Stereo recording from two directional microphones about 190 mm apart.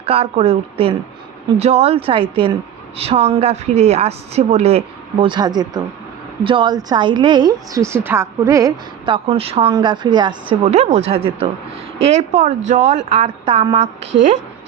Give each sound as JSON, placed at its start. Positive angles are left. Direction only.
{"t": 0.0, "sound": "a woman's voice", "side_deg": -30}
{"t": 9.1, "sound": "a woman's voice", "side_deg": -30}